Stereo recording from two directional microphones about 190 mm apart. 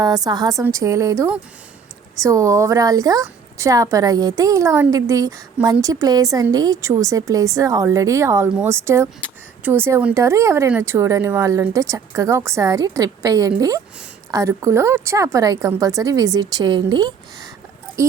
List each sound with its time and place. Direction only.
0.0 s speech: 20° right (ahead or behind)